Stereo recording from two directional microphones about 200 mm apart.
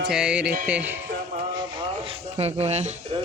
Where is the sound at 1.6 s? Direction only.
25° right (ahead or behind).